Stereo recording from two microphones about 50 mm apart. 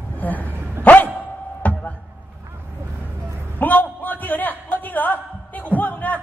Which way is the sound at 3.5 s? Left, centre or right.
Left.